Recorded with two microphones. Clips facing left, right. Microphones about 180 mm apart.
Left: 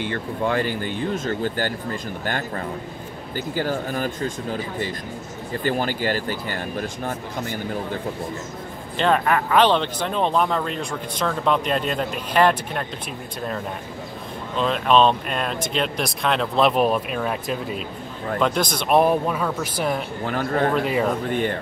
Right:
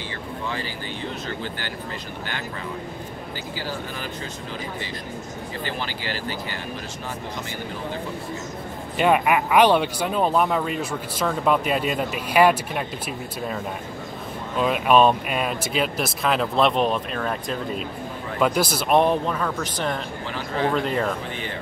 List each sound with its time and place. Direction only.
0.0 s speech: 55° left (ahead or behind)
8.9 s speech: 10° right (ahead or behind)
14.6 s speech: 10° right (ahead or behind)
18.4 s speech: 5° right (ahead or behind)
18.9 s speech: 10° left (ahead or behind)
20.2 s speech: 50° left (ahead or behind)
20.7 s speech: 5° left (ahead or behind)
21.3 s speech: 50° left (ahead or behind)